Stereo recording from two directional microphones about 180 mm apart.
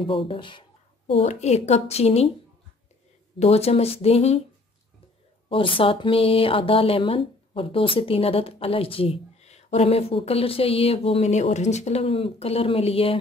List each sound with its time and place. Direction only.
0.0 s a sound: 30° left (ahead or behind)
1.2 s speech: 35° left (ahead or behind)
3.3 s speech: 35° left (ahead or behind)
5.5 s speech: 30° left (ahead or behind)